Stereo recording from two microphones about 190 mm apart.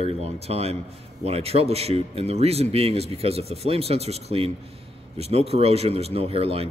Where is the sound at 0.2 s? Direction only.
30° right (ahead or behind).